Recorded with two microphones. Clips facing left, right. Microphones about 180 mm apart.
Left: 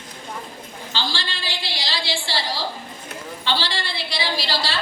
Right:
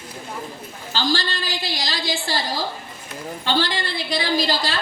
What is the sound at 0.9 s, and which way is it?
A woman's voice, 45° right (ahead or behind).